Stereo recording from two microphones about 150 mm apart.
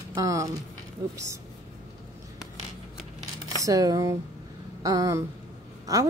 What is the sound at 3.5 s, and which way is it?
A woman's voice, 25° right (ahead or behind).